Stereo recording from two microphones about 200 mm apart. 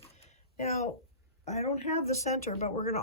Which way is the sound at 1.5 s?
35° left (ahead or behind).